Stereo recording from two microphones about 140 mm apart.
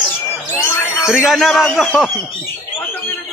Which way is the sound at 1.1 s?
5° right (ahead or behind).